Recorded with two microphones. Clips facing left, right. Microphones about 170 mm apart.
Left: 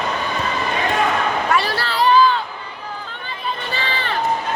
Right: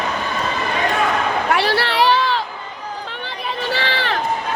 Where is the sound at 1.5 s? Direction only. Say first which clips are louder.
Right 2 dB; 70° right (ahead or behind).